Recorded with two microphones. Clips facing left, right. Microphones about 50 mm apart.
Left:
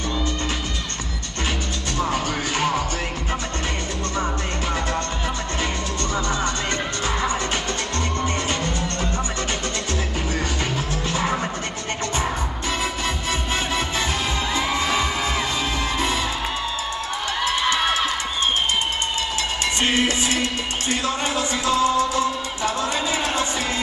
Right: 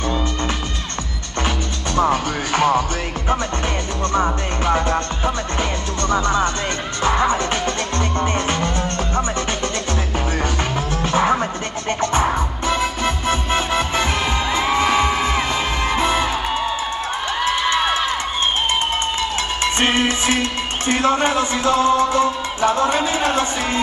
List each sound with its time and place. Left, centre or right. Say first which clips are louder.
2.0 s music: right 6 dB; right
4.1 s music: right 6 dB; right
11.1 s music: right 7 dB; right
19.6 s music: right 3 dB; right